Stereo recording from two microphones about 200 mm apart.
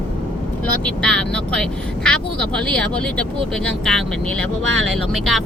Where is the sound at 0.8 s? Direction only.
5° left (ahead or behind).